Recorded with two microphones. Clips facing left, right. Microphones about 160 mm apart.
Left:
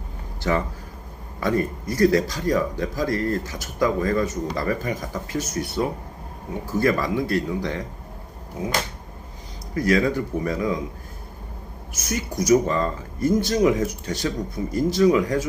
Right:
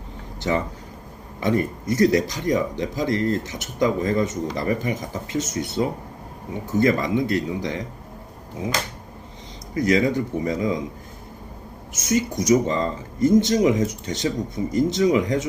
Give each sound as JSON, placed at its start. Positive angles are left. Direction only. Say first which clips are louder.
{"t": 0.4, "sound": "a man's voice", "louder": "even", "side_deg": -20}
{"t": 9.7, "sound": "a man's voice", "louder": "right 1 dB", "side_deg": -20}
{"t": 11.9, "sound": "a man's voice", "louder": "right 4 dB", "side_deg": -20}